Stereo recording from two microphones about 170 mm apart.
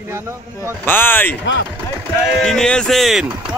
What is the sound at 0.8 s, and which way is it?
Speech, 10° left (ahead or behind).